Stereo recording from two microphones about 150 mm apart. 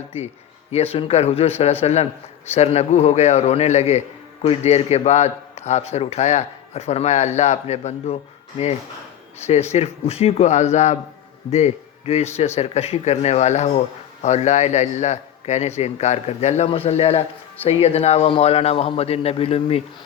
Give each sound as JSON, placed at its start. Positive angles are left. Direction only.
{"t": 0.7, "sound": "speech", "side_deg": 40}
{"t": 9.7, "sound": "a man's voice", "side_deg": 45}